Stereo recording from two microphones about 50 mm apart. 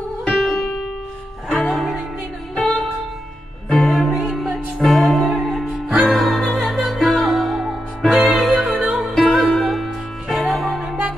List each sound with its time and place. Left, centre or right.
0.3 s music: centre
2.5 s music: centre
8.7 s music: right
9.1 s music: centre